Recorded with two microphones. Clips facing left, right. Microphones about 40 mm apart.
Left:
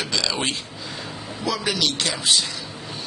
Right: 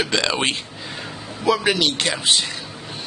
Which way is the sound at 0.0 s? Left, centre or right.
Right.